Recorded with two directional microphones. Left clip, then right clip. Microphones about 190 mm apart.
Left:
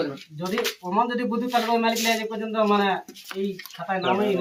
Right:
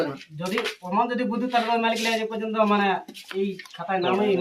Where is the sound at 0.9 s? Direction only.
15° left (ahead or behind).